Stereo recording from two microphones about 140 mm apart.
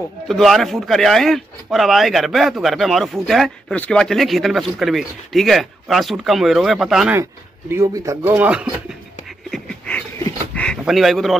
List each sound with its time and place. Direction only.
0.3 s speech: centre (ahead or behind)
7.7 s speech: 25° right (ahead or behind); by 8.9 s 10° right (ahead or behind)
9.5 s dog: 10° left (ahead or behind)
10.5 s a sound: 5° left (ahead or behind)